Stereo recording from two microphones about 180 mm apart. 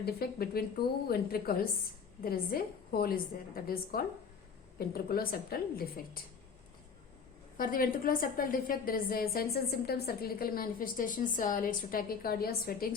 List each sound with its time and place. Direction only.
0.0 s a woman's voice: 60° left (ahead or behind)
7.5 s a woman's voice: 50° left (ahead or behind)